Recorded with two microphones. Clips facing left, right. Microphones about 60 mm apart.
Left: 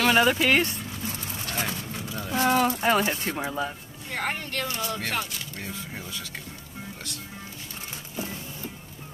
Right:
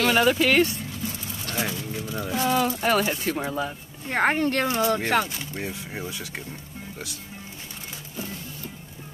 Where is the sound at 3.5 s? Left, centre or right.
Centre.